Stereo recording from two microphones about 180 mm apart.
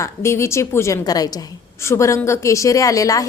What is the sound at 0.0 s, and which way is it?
A woman's voice, 15° left (ahead or behind).